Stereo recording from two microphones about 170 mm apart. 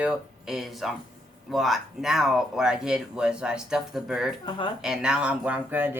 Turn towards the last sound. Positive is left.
turn(degrees=-10)  # may be behind; listen again after turning